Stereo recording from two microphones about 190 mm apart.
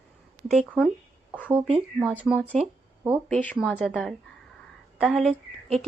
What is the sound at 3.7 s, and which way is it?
Speech, 5° left (ahead or behind).